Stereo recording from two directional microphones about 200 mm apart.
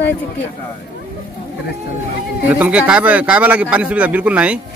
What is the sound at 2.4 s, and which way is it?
A man's voice, 5° right (ahead or behind).